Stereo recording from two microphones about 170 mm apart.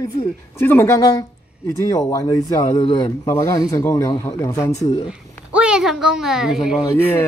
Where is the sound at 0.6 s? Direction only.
15° left (ahead or behind).